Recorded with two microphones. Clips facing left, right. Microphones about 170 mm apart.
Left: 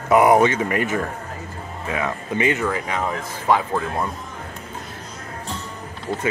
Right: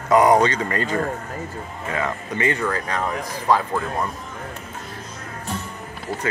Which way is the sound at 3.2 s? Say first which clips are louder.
Even; 25° left (ahead or behind).